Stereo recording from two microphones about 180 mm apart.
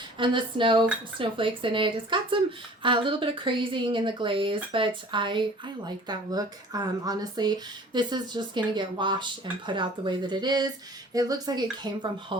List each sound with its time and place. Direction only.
0.2 s speech: 25° right (ahead or behind)